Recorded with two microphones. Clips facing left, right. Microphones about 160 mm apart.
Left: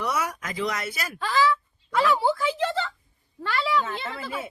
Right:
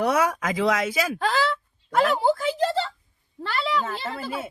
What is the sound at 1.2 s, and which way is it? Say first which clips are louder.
Speech: left 6 dB; 65° right (ahead or behind).